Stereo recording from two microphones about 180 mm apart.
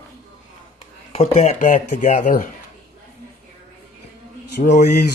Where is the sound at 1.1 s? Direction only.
35° left (ahead or behind).